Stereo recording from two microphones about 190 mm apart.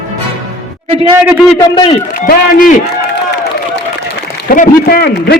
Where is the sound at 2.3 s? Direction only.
50° left (ahead or behind).